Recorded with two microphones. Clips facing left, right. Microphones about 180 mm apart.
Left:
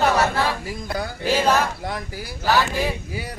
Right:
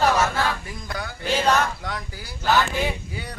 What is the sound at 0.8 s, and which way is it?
Music, 35° left (ahead or behind).